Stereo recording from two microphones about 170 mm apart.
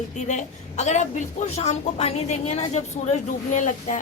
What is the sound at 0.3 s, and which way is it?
A woman's voice, 45° left (ahead or behind).